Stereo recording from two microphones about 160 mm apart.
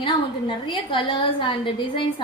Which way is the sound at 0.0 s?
30° left (ahead or behind).